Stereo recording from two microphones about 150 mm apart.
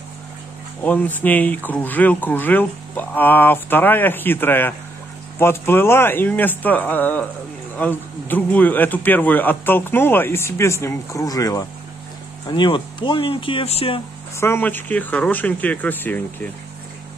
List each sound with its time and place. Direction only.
0.8 s speech: 10° left (ahead or behind); by 14.0 s 40° left (ahead or behind)
14.4 s speech: 15° left (ahead or behind)